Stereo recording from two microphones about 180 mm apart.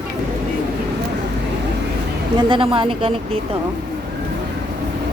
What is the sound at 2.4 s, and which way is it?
Speech, 25° right (ahead or behind).